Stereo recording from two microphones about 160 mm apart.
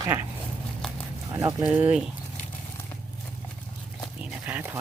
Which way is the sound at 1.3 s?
20° right (ahead or behind).